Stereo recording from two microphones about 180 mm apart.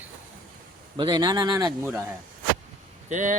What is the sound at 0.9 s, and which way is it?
Speech, 25° right (ahead or behind).